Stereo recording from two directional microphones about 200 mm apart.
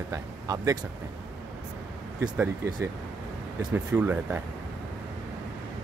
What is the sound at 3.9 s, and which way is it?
Speech, 10° right (ahead or behind).